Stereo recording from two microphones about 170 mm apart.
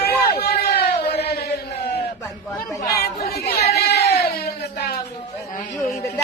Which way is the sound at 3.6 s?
70° left (ahead or behind).